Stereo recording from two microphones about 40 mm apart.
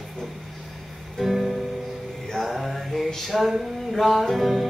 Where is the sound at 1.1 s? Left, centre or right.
Centre.